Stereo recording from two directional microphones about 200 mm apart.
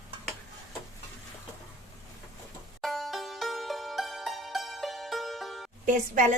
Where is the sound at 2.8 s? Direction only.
Centre (ahead or behind).